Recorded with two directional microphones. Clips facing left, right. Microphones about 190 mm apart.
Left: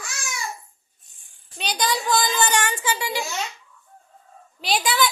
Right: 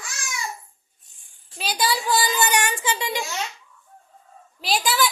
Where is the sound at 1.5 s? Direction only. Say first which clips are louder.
Even; 5° right (ahead or behind); by 3.2 s 20° right (ahead or behind).